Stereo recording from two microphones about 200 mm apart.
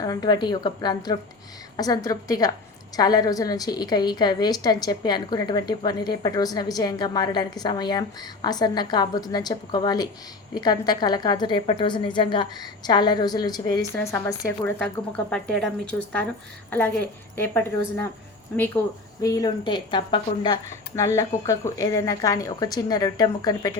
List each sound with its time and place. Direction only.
0.0 s a woman's voice: 20° left (ahead or behind)